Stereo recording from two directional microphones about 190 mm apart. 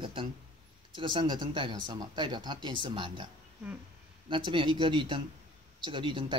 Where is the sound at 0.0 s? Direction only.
25° right (ahead or behind).